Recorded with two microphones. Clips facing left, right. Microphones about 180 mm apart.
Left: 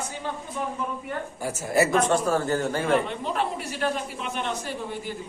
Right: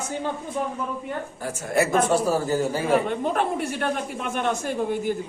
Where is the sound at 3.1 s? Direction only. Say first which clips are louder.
Right 4 dB; 50° right (ahead or behind).